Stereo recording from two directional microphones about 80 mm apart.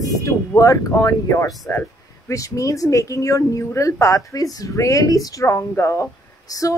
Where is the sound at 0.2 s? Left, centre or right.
Left.